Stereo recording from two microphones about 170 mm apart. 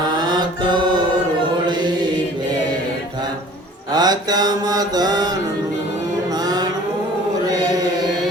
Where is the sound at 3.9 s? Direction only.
25° right (ahead or behind).